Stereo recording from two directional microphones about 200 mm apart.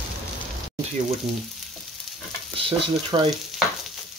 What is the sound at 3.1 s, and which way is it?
Stir, 25° right (ahead or behind).